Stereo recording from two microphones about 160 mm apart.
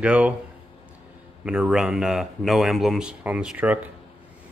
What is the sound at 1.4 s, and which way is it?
Speech, 5° right (ahead or behind).